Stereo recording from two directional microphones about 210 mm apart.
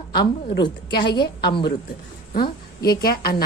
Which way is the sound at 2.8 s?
45° left (ahead or behind).